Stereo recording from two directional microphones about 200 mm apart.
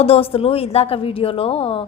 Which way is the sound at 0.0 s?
30° left (ahead or behind).